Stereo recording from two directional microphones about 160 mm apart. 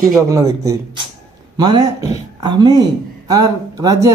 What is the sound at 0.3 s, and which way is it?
Speech, 20° right (ahead or behind).